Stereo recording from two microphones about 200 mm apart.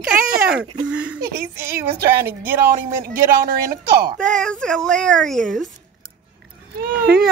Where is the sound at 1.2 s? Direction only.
50° right (ahead or behind).